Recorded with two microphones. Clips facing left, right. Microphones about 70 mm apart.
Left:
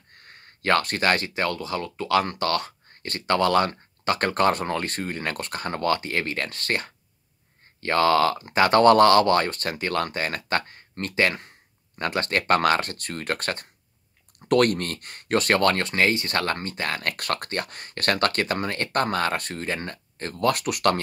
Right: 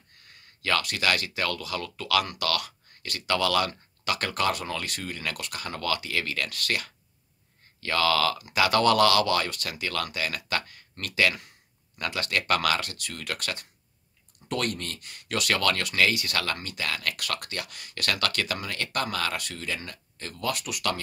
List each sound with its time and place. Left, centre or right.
0.1 s speech: left
14.4 s speech: left